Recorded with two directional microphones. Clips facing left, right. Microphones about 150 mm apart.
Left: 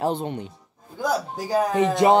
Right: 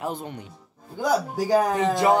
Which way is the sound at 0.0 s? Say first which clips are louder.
Left 6 dB; 25° left (ahead or behind).